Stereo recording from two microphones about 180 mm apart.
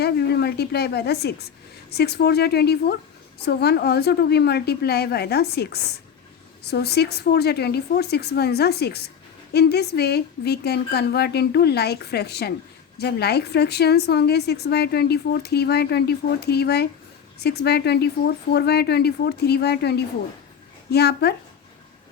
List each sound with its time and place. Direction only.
0.0 s a woman's voice: 65° left (ahead or behind)